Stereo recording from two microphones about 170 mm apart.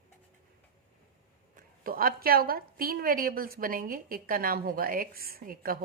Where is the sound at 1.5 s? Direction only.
55° right (ahead or behind).